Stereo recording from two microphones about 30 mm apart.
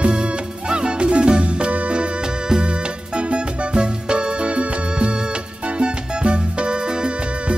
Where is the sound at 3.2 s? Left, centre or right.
Right.